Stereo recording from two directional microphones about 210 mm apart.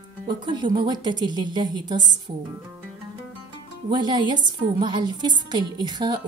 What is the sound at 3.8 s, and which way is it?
A woman's voice, 20° right (ahead or behind).